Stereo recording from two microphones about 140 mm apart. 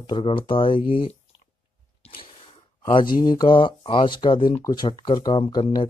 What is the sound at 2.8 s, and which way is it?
Speech, 35° left (ahead or behind).